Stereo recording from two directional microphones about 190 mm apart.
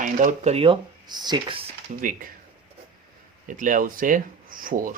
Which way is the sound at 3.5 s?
45° right (ahead or behind).